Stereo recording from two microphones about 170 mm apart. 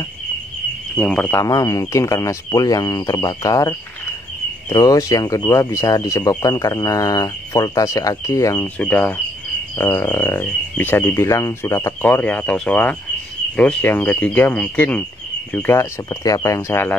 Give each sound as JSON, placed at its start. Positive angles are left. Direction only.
{"t": 0.9, "sound": "speech", "side_deg": 5}
{"t": 1.4, "sound": "speech", "side_deg": 20}
{"t": 8.7, "sound": "speech", "side_deg": 10}